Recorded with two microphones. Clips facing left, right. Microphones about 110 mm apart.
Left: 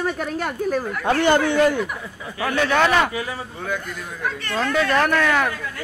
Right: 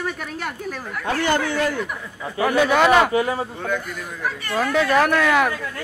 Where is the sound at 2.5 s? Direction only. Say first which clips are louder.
Right 2 dB; 10° right (ahead or behind).